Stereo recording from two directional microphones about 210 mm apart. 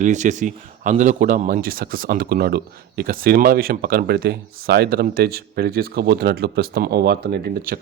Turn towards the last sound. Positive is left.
turn(degrees=-45)  # may be behind; listen again after turning